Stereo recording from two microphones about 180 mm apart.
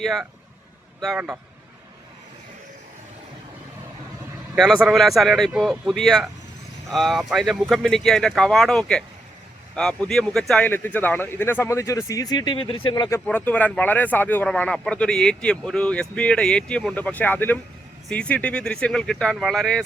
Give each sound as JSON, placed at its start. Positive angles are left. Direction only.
{"t": 0.0, "sound": "speech", "side_deg": 0}
{"t": 4.5, "sound": "speech", "side_deg": 0}
{"t": 13.1, "sound": "speech", "side_deg": 10}